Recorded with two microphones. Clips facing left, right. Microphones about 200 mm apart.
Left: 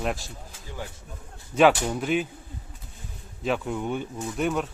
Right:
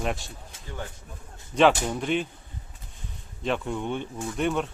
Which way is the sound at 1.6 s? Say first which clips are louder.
Left 1 dB; 5° left (ahead or behind).